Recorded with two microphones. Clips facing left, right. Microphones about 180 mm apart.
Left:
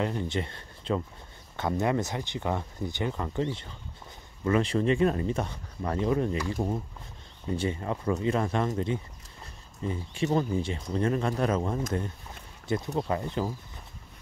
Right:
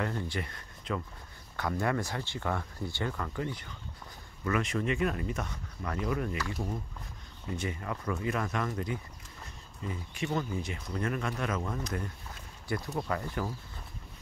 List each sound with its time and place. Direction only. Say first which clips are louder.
0.0 s speech: left 4 dB; 20° left (ahead or behind)